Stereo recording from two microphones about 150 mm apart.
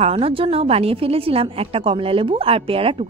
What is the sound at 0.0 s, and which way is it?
A woman's voice, 40° right (ahead or behind).